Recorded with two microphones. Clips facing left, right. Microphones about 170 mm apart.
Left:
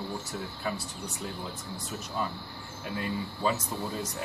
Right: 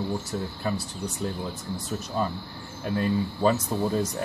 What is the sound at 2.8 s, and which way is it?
Speech, 40° right (ahead or behind).